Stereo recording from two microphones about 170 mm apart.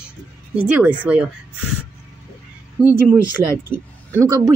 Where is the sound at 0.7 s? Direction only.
10° right (ahead or behind).